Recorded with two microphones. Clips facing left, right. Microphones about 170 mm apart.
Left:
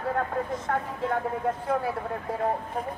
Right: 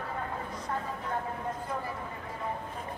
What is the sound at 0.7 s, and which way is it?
Vehicle, 70° left (ahead or behind).